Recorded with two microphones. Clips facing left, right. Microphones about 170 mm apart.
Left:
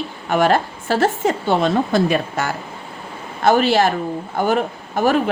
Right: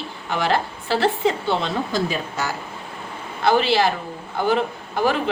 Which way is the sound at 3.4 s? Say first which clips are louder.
Left 3 dB; 45° left (ahead or behind).